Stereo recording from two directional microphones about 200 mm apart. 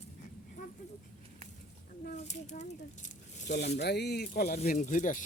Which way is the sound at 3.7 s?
55° left (ahead or behind).